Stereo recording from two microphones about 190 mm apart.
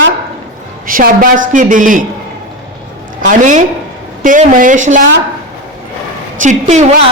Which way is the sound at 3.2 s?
45° right (ahead or behind).